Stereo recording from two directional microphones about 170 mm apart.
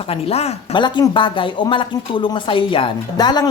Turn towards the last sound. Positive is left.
turn(degrees=25)  # may be behind; listen again after turning